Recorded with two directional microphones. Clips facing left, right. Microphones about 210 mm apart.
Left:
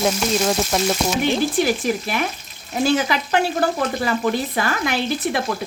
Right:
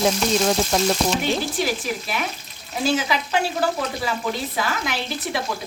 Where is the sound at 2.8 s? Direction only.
55° left (ahead or behind).